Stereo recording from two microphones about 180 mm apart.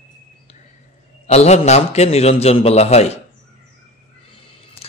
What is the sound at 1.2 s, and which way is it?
Speech, 35° left (ahead or behind).